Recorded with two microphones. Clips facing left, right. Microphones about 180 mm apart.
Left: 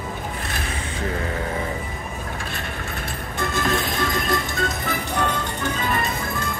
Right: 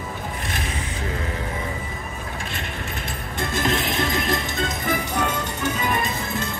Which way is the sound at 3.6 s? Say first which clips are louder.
Right 1 dB; 20° right (ahead or behind).